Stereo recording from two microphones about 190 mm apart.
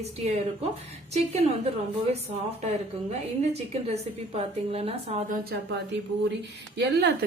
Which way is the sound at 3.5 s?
30° right (ahead or behind).